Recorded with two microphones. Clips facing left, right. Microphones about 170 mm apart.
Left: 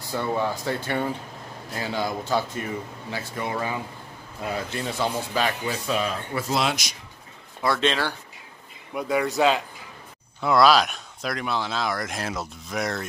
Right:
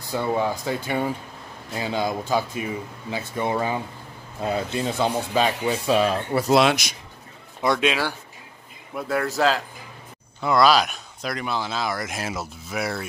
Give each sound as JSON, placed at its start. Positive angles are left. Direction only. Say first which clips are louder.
{"t": 0.1, "sound": "speech", "louder": "right 2 dB", "side_deg": -15}
{"t": 5.9, "sound": "speech", "louder": "right 7 dB", "side_deg": -35}
{"t": 6.5, "sound": "speech", "louder": "right 8 dB", "side_deg": -70}
{"t": 7.6, "sound": "speech", "louder": "right 2 dB", "side_deg": -15}
{"t": 8.9, "sound": "speech", "louder": "left 1 dB", "side_deg": 0}